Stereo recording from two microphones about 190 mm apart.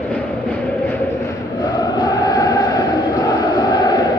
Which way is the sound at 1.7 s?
20° left (ahead or behind).